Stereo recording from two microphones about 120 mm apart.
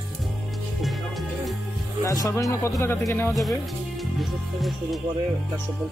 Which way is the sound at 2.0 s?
25° left (ahead or behind).